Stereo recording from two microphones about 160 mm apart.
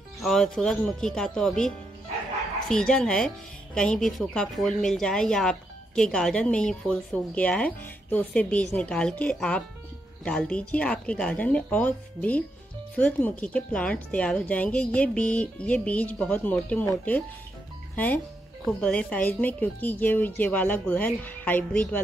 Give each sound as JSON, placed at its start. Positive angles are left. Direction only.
{"t": 0.2, "sound": "a woman's voice", "side_deg": 0}
{"t": 2.7, "sound": "a woman's voice", "side_deg": 5}